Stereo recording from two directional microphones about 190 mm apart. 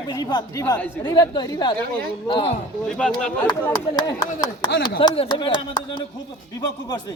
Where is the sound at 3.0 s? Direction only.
5° left (ahead or behind).